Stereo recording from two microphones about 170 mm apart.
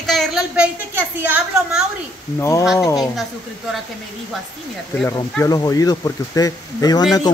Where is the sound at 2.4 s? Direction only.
15° left (ahead or behind).